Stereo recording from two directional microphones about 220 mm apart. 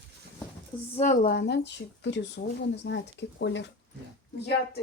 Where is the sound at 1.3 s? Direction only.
50° left (ahead or behind).